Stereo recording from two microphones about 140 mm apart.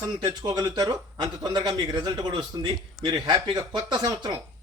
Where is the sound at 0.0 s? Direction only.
25° right (ahead or behind).